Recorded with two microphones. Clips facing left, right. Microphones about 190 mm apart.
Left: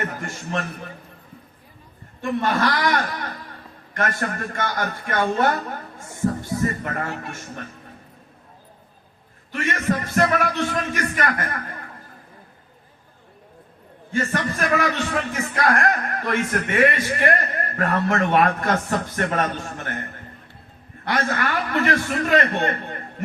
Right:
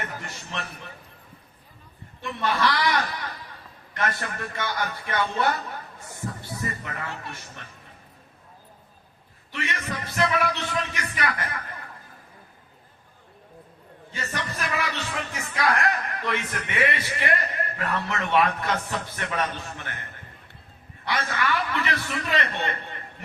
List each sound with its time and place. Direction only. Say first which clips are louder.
0.2 s a man's voice: left 8 dB; 45° left (ahead or behind)
2.2 s a man's voice: left 4 dB; 45° left (ahead or behind)
9.5 s a man's voice: left 9 dB; 45° left (ahead or behind)
14.1 s a man's voice: left 9 dB; 50° left (ahead or behind)